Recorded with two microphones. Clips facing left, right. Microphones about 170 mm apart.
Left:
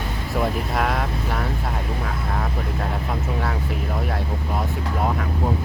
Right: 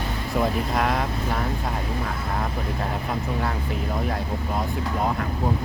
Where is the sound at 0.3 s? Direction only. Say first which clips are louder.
Even; centre (ahead or behind).